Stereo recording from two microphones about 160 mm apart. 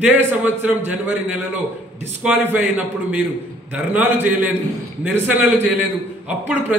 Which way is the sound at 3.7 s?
10° right (ahead or behind).